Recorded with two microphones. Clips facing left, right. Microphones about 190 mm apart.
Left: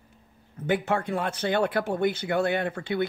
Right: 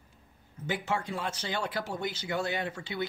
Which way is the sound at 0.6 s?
55° left (ahead or behind).